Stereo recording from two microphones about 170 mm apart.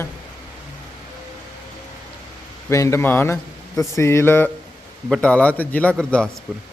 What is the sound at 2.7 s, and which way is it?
A man's voice, 15° left (ahead or behind).